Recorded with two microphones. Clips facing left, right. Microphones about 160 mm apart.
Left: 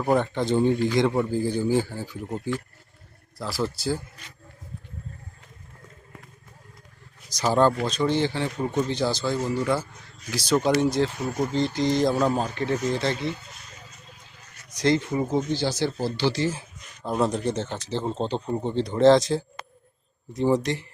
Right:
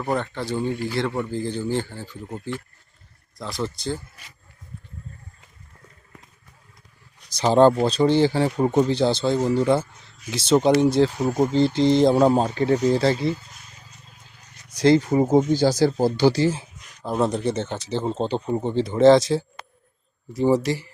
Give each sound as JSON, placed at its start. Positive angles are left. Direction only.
{"t": 0.0, "sound": "a man's voice", "side_deg": 10}
{"t": 3.3, "sound": "speech", "side_deg": 5}
{"t": 7.3, "sound": "speech", "side_deg": -25}
{"t": 14.7, "sound": "speech", "side_deg": -30}
{"t": 17.0, "sound": "speech", "side_deg": 0}